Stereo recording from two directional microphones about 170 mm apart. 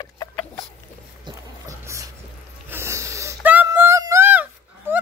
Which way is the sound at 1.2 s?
20° right (ahead or behind).